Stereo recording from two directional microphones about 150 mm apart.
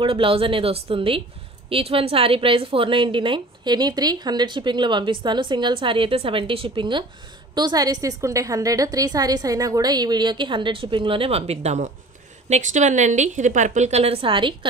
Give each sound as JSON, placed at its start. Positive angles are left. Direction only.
{"t": 0.0, "sound": "a woman's voice", "side_deg": -35}